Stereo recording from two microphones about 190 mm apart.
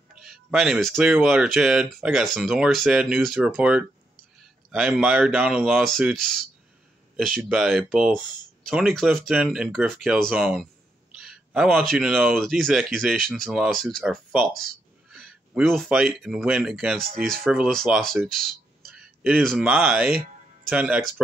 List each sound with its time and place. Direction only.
0.1 s speech: 5° right (ahead or behind)
20.1 s music: 50° right (ahead or behind)
20.7 s speech: 5° right (ahead or behind)